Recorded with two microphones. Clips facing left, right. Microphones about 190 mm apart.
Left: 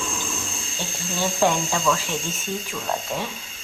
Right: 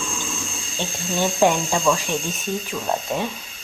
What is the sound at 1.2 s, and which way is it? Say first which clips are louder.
Speech: right 3 dB; 15° right (ahead or behind).